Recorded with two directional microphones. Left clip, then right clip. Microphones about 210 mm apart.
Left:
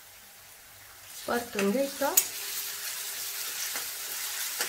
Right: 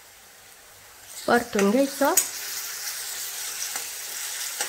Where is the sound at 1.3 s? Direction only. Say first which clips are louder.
Right 10 dB; 45° right (ahead or behind).